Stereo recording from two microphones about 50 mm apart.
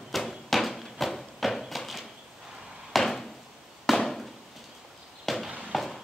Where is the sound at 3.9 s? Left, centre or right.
Centre.